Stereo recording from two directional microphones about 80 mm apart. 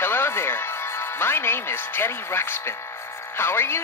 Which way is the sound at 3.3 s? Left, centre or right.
Left.